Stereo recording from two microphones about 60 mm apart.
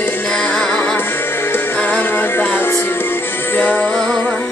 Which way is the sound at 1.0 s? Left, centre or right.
Left.